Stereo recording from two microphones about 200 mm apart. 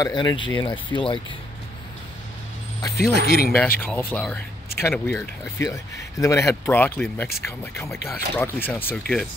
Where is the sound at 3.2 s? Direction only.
50° left (ahead or behind).